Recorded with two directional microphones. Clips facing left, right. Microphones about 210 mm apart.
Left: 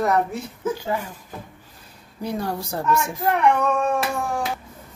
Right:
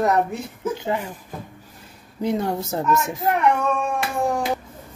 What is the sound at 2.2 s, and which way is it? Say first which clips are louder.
Speech: right 4 dB; 20° right (ahead or behind).